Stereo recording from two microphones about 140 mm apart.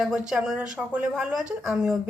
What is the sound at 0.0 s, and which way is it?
Speech, 5° right (ahead or behind).